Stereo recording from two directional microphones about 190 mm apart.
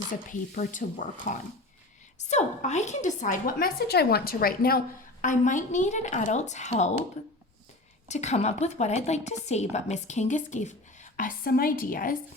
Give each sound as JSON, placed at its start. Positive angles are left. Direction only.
{"t": 0.3, "sound": "a woman's voice", "side_deg": 45}
{"t": 2.1, "sound": "a woman's voice", "side_deg": 40}
{"t": 8.0, "sound": "a woman's voice", "side_deg": 35}